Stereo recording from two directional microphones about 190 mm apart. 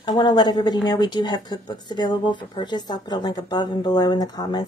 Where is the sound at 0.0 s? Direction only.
20° left (ahead or behind).